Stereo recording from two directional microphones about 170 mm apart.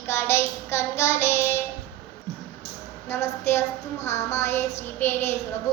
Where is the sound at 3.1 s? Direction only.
15° left (ahead or behind).